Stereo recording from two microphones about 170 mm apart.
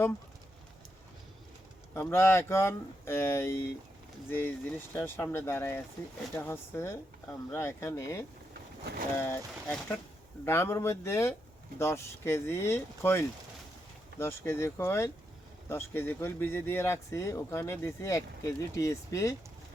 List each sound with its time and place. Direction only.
1.9 s speech: 15° left (ahead or behind)
8.8 s speech: 75° right (ahead or behind)
9.1 s speech: 15° left (ahead or behind)